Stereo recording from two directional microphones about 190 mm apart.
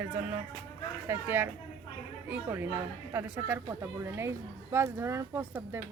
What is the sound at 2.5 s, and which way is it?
Speech, 10° right (ahead or behind).